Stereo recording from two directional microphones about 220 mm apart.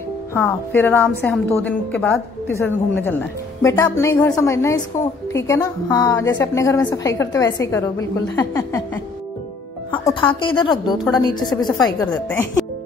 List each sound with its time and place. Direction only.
0.3 s a woman's voice: 10° left (ahead or behind)
9.9 s speech: 20° left (ahead or behind)
12.3 s a woman's voice: 5° left (ahead or behind)